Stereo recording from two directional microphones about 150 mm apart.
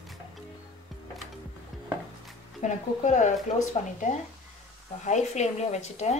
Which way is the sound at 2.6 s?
55° left (ahead or behind).